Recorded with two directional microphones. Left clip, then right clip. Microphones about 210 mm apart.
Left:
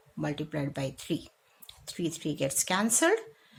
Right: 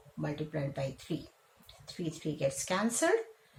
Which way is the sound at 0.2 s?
50° left (ahead or behind).